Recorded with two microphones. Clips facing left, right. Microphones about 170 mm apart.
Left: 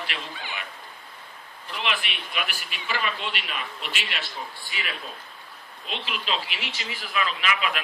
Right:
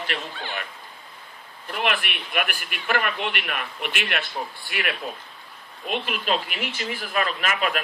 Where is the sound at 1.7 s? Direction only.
55° right (ahead or behind).